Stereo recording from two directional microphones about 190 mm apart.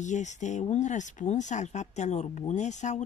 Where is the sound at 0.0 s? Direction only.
40° left (ahead or behind).